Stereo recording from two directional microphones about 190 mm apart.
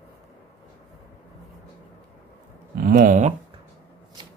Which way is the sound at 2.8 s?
45° right (ahead or behind).